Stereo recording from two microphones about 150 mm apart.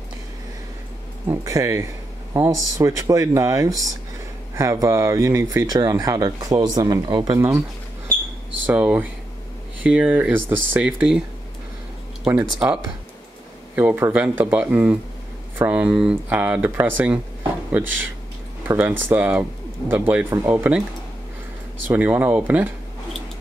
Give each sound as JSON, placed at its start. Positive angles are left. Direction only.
{"t": 1.4, "sound": "speech", "side_deg": -20}
{"t": 8.6, "sound": "speech", "side_deg": -10}
{"t": 12.3, "sound": "speech", "side_deg": -10}
{"t": 18.7, "sound": "speech", "side_deg": -15}
{"t": 21.8, "sound": "speech", "side_deg": -10}